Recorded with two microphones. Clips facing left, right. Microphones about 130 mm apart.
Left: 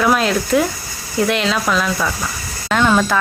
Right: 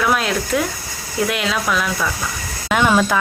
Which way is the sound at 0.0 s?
Centre (ahead or behind).